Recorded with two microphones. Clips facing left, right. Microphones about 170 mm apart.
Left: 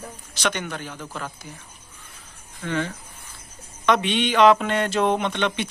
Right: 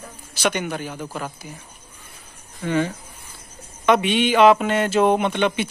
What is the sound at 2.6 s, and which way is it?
Speech, 10° right (ahead or behind).